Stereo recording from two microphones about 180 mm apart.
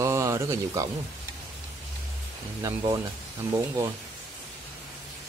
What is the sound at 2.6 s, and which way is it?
Speech, 20° right (ahead or behind).